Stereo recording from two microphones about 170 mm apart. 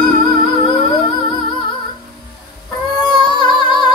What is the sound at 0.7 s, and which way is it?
Music, 30° left (ahead or behind).